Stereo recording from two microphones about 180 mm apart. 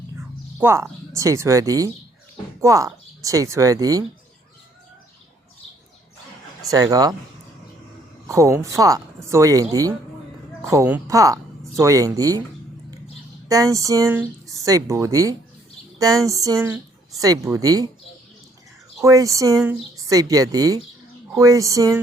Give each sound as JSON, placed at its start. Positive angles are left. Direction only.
{"t": 0.6, "sound": "speech", "side_deg": -15}
{"t": 6.7, "sound": "speech", "side_deg": -20}
{"t": 8.3, "sound": "speech", "side_deg": -15}
{"t": 13.5, "sound": "speech", "side_deg": -20}
{"t": 19.0, "sound": "speech", "side_deg": -20}